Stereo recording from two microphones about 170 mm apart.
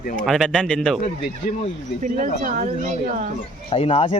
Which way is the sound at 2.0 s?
50° right (ahead or behind).